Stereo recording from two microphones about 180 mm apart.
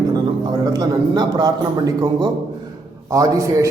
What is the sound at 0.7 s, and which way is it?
A man's voice, 20° right (ahead or behind).